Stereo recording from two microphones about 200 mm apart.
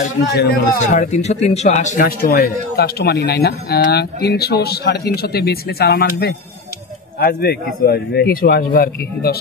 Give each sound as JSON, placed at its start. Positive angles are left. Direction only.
{"t": 0.0, "sound": "a man's voice", "side_deg": 50}